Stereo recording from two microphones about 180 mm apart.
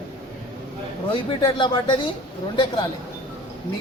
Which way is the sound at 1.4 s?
25° left (ahead or behind).